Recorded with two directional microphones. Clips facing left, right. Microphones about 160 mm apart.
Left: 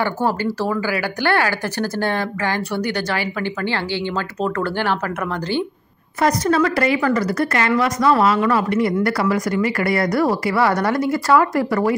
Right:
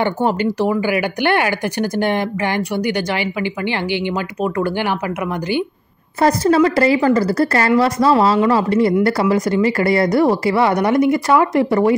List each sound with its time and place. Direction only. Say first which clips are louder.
0.0 s speech: right 3 dB; 20° right (ahead or behind)
6.2 s a woman's voice: right 4 dB; 30° right (ahead or behind)